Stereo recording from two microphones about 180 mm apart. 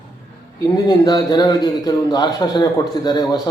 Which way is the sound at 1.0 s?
20° left (ahead or behind).